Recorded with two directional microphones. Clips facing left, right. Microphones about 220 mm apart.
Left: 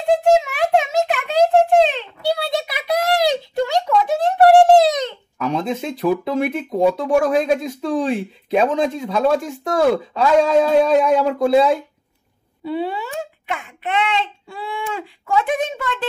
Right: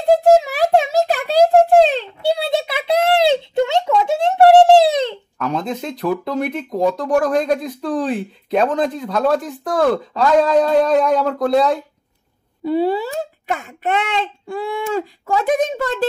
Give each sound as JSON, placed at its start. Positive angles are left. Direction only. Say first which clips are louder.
{"t": 0.4, "sound": "a sound", "louder": "right 2 dB", "side_deg": -35}
{"t": 5.4, "sound": "speech", "louder": "left 1 dB", "side_deg": 0}
{"t": 12.6, "sound": "a child's voice", "louder": "right 6 dB", "side_deg": -40}